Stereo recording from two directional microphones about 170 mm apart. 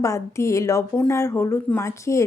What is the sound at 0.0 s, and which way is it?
Speech, 15° left (ahead or behind).